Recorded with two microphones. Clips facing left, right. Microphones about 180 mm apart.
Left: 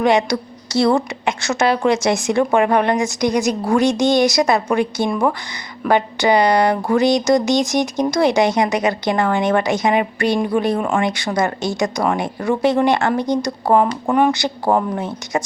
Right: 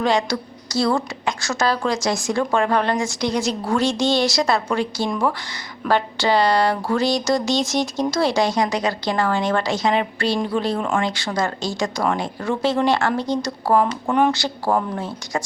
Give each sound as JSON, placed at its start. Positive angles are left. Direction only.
{"t": 0.0, "sound": "a woman's voice", "side_deg": 20}
{"t": 10.8, "sound": "speech", "side_deg": 5}
{"t": 11.0, "sound": "a woman's voice", "side_deg": 15}
{"t": 14.1, "sound": "speech", "side_deg": 5}
{"t": 14.3, "sound": "a woman's voice", "side_deg": 20}